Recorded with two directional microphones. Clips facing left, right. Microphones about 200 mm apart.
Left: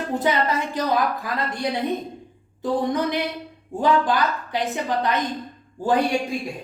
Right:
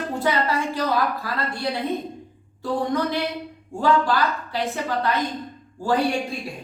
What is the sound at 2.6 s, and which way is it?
A woman's voice, 15° left (ahead or behind).